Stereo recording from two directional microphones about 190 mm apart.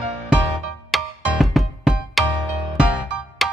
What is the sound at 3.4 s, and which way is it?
Music, centre (ahead or behind).